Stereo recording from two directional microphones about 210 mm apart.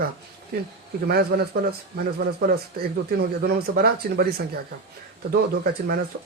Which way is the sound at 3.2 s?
45° right (ahead or behind).